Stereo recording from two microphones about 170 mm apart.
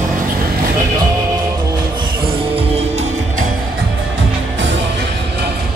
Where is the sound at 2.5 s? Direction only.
40° right (ahead or behind).